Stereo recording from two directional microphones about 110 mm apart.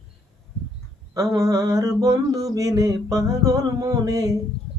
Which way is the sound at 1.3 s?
30° right (ahead or behind).